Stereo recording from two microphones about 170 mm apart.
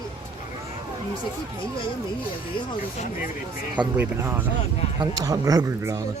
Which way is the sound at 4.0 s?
10° right (ahead or behind).